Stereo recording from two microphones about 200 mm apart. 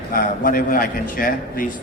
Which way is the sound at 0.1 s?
45° left (ahead or behind).